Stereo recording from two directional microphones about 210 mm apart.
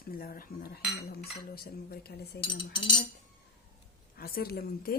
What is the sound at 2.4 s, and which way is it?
Cutlery, 20° left (ahead or behind).